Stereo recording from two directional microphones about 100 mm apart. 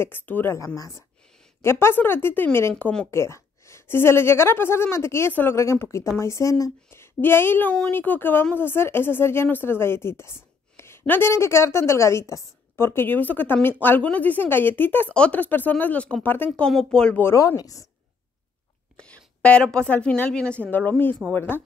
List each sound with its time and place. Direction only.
0.0 s speech: 20° left (ahead or behind)
0.7 s speech: 30° left (ahead or behind)
2.8 s speech: 10° left (ahead or behind)
3.1 s speech: 30° left (ahead or behind); by 17.2 s 10° left (ahead or behind)
17.2 s speech: 30° left (ahead or behind)
18.9 s a woman's voice: 10° left (ahead or behind)
21.3 s speech: 20° left (ahead or behind)